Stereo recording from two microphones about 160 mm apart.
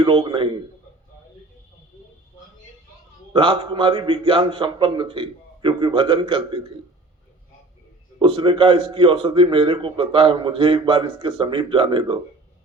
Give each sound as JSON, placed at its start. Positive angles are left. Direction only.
{"t": 0.0, "sound": "a man's voice", "side_deg": -30}
{"t": 3.3, "sound": "a man's voice", "side_deg": -35}
{"t": 8.2, "sound": "a man's voice", "side_deg": -35}